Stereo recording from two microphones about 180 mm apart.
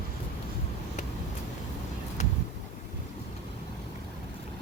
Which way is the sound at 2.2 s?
40° left (ahead or behind).